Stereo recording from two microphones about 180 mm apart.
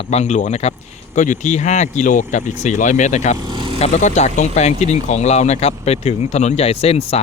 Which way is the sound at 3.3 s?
25° right (ahead or behind).